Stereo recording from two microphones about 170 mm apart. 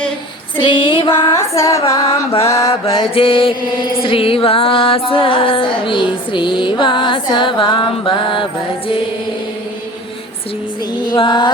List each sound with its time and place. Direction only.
0.5 s music: 30° left (ahead or behind)
1.4 s music: 20° left (ahead or behind)
2.0 s music: 35° left (ahead or behind)
2.6 s mantra: 30° left (ahead or behind)
4.0 s music: 35° left (ahead or behind)
11.0 s a sound: 25° left (ahead or behind)